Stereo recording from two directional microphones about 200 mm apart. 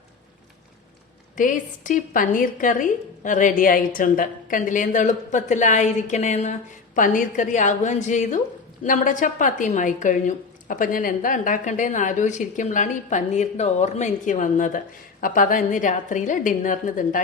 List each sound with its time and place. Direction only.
1.4 s a woman's voice: 40° left (ahead or behind)